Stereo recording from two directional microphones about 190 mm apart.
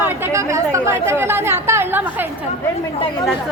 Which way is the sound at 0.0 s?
10° right (ahead or behind).